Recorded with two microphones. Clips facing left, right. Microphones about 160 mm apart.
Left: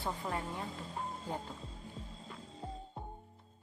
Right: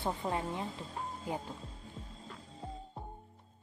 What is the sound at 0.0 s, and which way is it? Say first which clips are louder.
Speech: right 3 dB; 25° right (ahead or behind).